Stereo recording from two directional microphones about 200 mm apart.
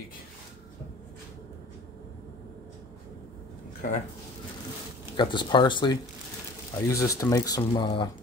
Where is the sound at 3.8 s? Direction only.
40° left (ahead or behind).